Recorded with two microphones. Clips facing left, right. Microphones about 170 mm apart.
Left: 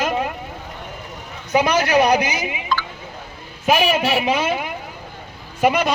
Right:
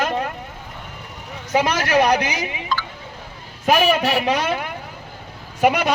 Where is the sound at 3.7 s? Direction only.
45° right (ahead or behind).